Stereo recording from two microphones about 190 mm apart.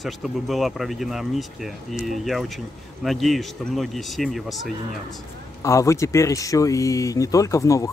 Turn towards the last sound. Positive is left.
turn(degrees=15)  # may be behind; listen again after turning